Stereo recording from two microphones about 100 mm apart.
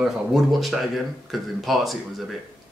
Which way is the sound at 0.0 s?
Centre (ahead or behind).